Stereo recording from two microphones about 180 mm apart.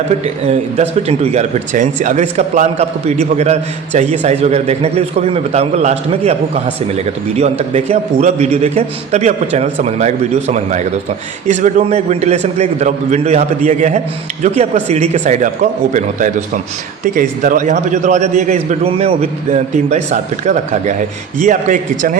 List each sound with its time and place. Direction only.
0.4 s speech: 35° right (ahead or behind)